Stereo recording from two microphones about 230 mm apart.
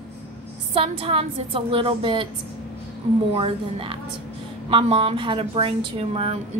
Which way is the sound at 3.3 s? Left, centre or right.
Right.